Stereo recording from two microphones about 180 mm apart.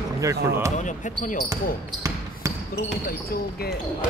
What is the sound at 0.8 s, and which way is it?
Speech, 45° left (ahead or behind).